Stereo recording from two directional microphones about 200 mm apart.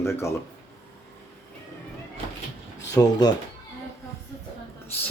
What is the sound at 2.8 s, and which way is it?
Speech, 15° left (ahead or behind).